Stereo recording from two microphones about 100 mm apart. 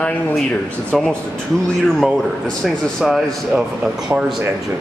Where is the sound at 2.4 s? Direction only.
Centre (ahead or behind).